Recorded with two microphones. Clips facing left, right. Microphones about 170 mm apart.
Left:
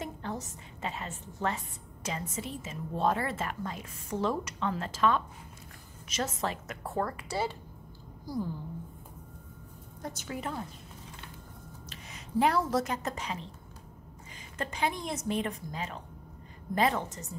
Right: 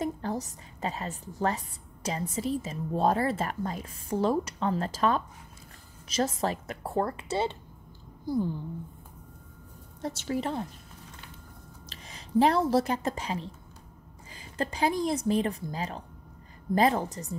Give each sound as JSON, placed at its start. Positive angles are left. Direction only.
{"t": 0.0, "sound": "a woman's voice", "side_deg": -35}
{"t": 10.0, "sound": "a woman's voice", "side_deg": -30}
{"t": 11.9, "sound": "speech", "side_deg": -35}
{"t": 14.6, "sound": "a woman's voice", "side_deg": -35}